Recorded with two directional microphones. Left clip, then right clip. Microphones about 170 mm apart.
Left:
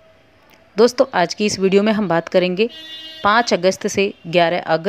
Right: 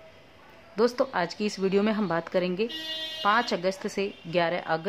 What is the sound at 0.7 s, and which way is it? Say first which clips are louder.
A woman's voice: left 11 dB; 35° left (ahead or behind).